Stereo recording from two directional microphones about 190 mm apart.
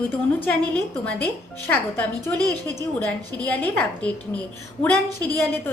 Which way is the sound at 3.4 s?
10° left (ahead or behind).